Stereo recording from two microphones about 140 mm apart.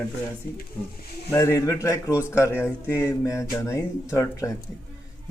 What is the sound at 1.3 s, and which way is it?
Speech, 20° left (ahead or behind).